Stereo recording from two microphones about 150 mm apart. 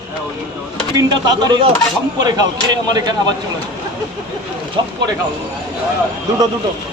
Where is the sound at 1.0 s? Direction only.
25° right (ahead or behind).